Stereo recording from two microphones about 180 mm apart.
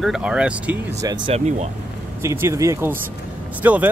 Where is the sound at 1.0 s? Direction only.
25° right (ahead or behind).